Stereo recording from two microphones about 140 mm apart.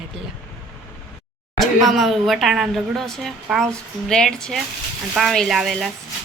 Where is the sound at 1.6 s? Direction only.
Centre (ahead or behind).